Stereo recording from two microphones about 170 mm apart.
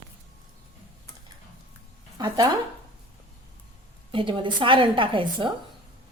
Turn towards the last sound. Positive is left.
turn(degrees=-30)  # may be behind; listen again after turning